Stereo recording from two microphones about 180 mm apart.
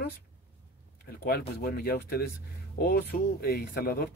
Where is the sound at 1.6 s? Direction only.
55° left (ahead or behind).